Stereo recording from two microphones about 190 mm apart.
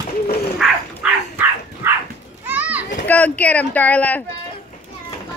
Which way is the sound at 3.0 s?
10° left (ahead or behind).